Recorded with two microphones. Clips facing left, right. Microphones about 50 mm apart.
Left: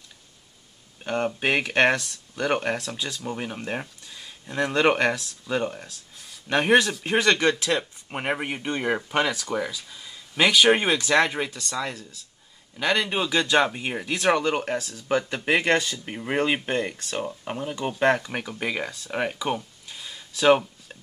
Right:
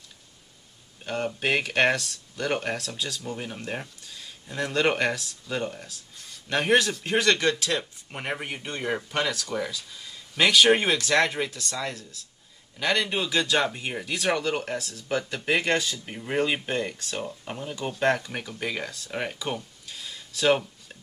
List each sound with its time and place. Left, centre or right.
1.0 s speech: centre
6.6 s speech: centre